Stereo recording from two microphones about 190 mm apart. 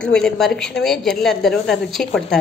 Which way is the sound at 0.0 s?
5° left (ahead or behind).